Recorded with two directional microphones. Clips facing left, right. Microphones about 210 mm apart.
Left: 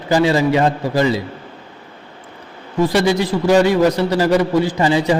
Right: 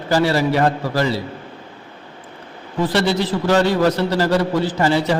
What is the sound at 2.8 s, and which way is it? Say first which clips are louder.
A man's voice: left 3 dB; 10° left (ahead or behind).